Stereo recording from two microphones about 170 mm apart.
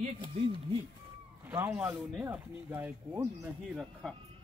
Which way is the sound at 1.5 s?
15° right (ahead or behind).